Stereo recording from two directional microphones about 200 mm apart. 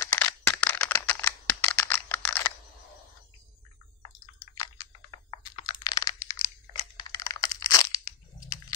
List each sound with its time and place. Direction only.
0.0 s a sound: 10° left (ahead or behind)
5.3 s computer keyboard: 20° left (ahead or behind)
6.3 s crumpling: 35° left (ahead or behind)
7.1 s crunch: 15° left (ahead or behind)
8.4 s biting: 15° left (ahead or behind)